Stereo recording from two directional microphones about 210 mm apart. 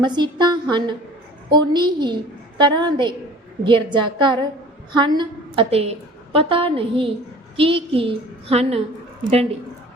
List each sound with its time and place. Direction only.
0.0 s a woman's voice: 20° right (ahead or behind)